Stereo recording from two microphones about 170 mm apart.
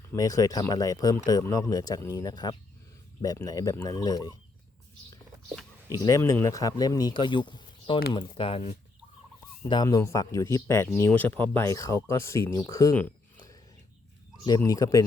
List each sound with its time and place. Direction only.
0.1 s speech: 20° left (ahead or behind)
6.0 s speech: 20° left (ahead or behind)
9.6 s speech: 25° left (ahead or behind)